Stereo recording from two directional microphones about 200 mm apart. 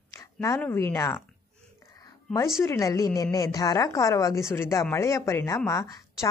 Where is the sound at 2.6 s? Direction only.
15° left (ahead or behind).